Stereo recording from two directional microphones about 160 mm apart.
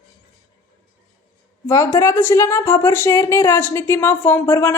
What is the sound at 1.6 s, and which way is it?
Speech, 20° left (ahead or behind).